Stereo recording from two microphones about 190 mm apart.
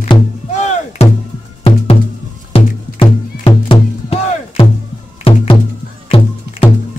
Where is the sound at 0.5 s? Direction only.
40° left (ahead or behind).